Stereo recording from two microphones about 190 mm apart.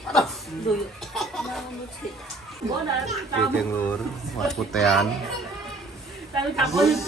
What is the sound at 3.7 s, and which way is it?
Speech, 5° left (ahead or behind).